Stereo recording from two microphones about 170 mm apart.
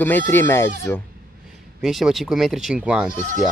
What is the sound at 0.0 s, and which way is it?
Speech, 10° left (ahead or behind).